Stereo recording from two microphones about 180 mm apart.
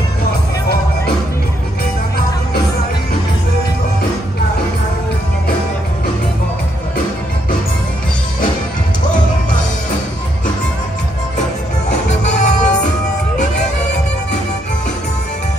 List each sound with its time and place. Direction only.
12.2 s music: 45° left (ahead or behind)